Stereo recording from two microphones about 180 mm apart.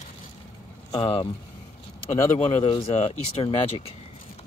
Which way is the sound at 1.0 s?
30° left (ahead or behind).